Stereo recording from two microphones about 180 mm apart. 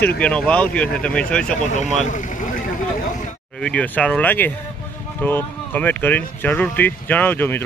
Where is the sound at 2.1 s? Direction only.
45° left (ahead or behind).